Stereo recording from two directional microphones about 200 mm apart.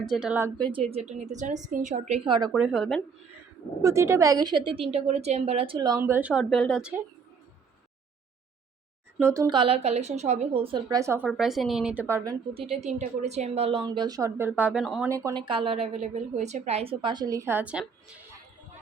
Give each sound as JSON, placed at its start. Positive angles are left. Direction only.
{"t": 0.1, "sound": "a woman's voice", "side_deg": -5}
{"t": 0.6, "sound": "a woman's voice", "side_deg": -25}
{"t": 2.5, "sound": "a woman's voice", "side_deg": -5}
{"t": 3.8, "sound": "speech", "side_deg": -15}
{"t": 9.2, "sound": "a woman's voice", "side_deg": -15}
{"t": 11.3, "sound": "a woman's voice", "side_deg": 0}
{"t": 12.6, "sound": "a woman's voice", "side_deg": -30}
{"t": 15.1, "sound": "a woman's voice", "side_deg": -20}